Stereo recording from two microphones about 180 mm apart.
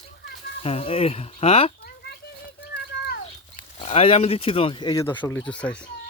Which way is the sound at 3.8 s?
35° left (ahead or behind).